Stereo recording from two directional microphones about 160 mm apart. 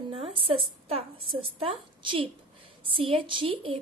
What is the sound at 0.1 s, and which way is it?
A woman's voice, 35° right (ahead or behind).